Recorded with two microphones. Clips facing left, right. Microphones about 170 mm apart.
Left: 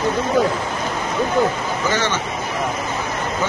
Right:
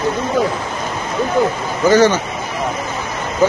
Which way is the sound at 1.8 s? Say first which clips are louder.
Right 11 dB; 40° right (ahead or behind).